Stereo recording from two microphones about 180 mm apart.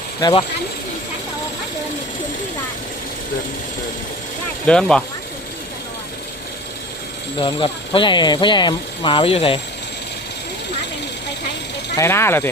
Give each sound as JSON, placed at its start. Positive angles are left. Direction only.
{"t": 0.2, "sound": "speech", "side_deg": 25}
{"t": 4.6, "sound": "speech", "side_deg": 5}
{"t": 7.3, "sound": "speech", "side_deg": 30}
{"t": 11.9, "sound": "speech", "side_deg": 15}